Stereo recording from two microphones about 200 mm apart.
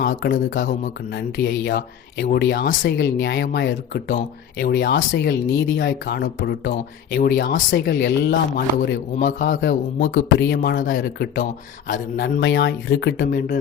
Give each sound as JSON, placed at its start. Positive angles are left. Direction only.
{"t": 1.1, "sound": "speech", "side_deg": 60}
{"t": 9.1, "sound": "speech", "side_deg": 40}
{"t": 9.6, "sound": "speech", "side_deg": 60}
{"t": 10.5, "sound": "speech", "side_deg": 50}